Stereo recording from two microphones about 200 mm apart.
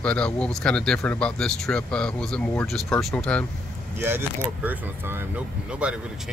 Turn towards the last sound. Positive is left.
turn(degrees=-5)  # may be behind; listen again after turning